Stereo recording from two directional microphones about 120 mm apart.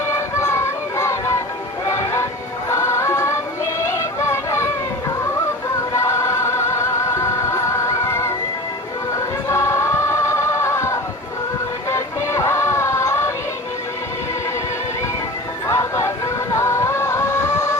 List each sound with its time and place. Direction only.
0.0 s a sound: 20° left (ahead or behind)
1.9 s music: 25° left (ahead or behind)
9.5 s music: 25° left (ahead or behind)
15.6 s music: 25° left (ahead or behind)